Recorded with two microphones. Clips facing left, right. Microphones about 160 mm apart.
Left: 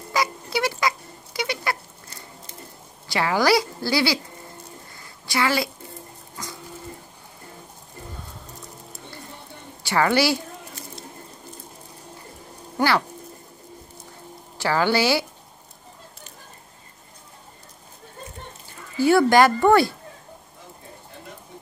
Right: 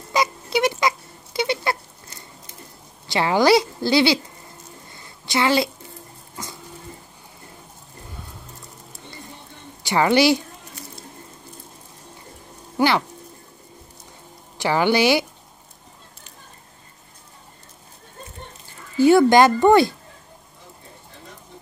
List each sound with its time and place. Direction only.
0.1 s a sound: 20° right (ahead or behind)
3.1 s speech: 25° right (ahead or behind)
5.2 s a woman's voice: 25° right (ahead or behind)
9.8 s speech: 20° right (ahead or behind)
12.7 s a sound: 20° right (ahead or behind)
14.6 s a woman's voice: 20° right (ahead or behind)
18.9 s speech: 20° right (ahead or behind)